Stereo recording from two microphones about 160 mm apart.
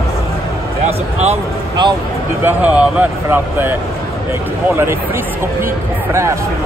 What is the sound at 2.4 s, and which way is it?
Speech, 10° right (ahead or behind).